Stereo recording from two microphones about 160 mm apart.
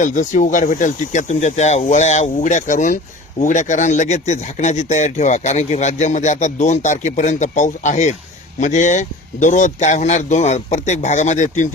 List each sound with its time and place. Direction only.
0.0 s speech: 50° left (ahead or behind)